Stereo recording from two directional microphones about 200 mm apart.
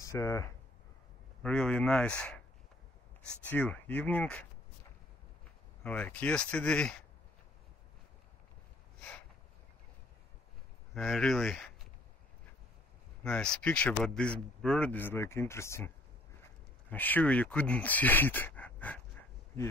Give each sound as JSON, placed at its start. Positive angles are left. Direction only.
{"t": 0.0, "sound": "speech", "side_deg": 15}
{"t": 3.4, "sound": "speech", "side_deg": 5}
{"t": 5.9, "sound": "speech", "side_deg": 5}
{"t": 11.0, "sound": "speech", "side_deg": 0}
{"t": 13.2, "sound": "speech", "side_deg": 5}
{"t": 16.9, "sound": "speech", "side_deg": 10}